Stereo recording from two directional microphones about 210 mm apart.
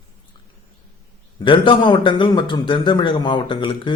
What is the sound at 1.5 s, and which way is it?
A man's voice, 25° left (ahead or behind).